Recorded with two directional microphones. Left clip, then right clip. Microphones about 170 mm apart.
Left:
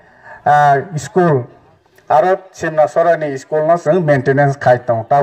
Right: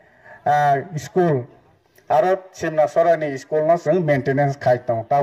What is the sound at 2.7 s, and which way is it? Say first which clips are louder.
Speech: left 4 dB; 15° left (ahead or behind).